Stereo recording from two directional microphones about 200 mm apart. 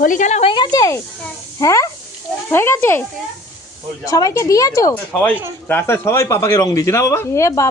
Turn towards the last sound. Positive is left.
turn(degrees=15)  # may be behind; listen again after turning